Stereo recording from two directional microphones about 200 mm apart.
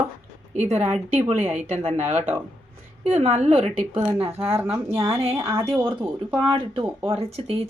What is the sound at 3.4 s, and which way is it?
Speech, 30° right (ahead or behind).